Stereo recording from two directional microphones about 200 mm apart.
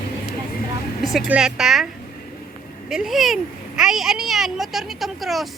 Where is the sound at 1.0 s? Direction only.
Centre (ahead or behind).